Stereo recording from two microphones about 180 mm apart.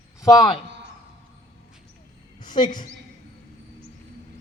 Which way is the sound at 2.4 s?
25° left (ahead or behind).